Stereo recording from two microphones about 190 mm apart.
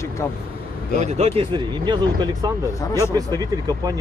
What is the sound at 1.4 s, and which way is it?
Speech, 25° right (ahead or behind).